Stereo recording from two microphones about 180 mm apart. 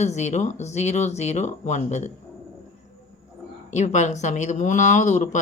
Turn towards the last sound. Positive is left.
turn(degrees=40)  # may be behind; listen again after turning